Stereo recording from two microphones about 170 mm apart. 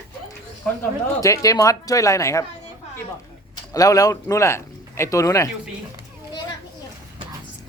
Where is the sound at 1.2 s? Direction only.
20° left (ahead or behind).